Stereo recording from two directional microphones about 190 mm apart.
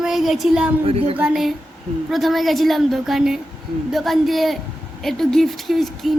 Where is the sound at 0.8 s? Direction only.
30° right (ahead or behind).